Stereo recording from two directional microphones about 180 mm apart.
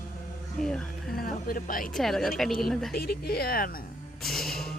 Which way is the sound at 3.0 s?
60° left (ahead or behind).